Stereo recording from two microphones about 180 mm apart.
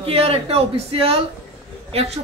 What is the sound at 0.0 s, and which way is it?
Speech, 35° right (ahead or behind).